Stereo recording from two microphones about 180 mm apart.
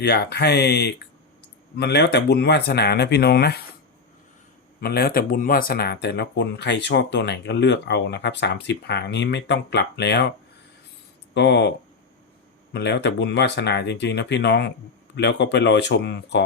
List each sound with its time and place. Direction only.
0.0 s speech: 65° left (ahead or behind)
4.8 s speech: 60° left (ahead or behind)
11.3 s speech: 70° left (ahead or behind)
12.7 s speech: 70° left (ahead or behind)